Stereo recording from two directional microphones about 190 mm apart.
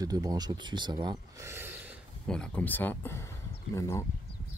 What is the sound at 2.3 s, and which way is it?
Speech, 5° left (ahead or behind).